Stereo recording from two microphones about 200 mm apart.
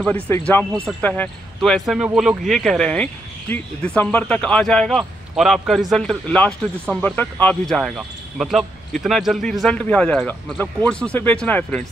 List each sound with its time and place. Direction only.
0.0 s speech: 5° left (ahead or behind)